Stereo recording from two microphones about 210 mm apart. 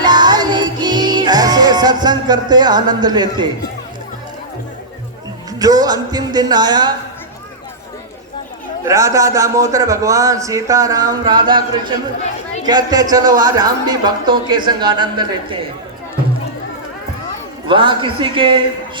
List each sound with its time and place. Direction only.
0.0 s music: 20° right (ahead or behind)
5.5 s speech: 20° right (ahead or behind)
8.8 s a man's voice: 15° right (ahead or behind)
17.7 s speech: 25° right (ahead or behind)